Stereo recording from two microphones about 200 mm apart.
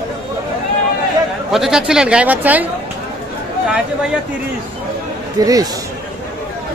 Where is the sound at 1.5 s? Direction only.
Centre (ahead or behind).